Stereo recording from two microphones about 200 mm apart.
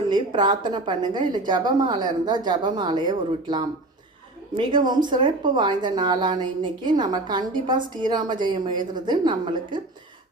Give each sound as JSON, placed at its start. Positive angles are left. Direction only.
{"t": 0.1, "sound": "speech", "side_deg": -20}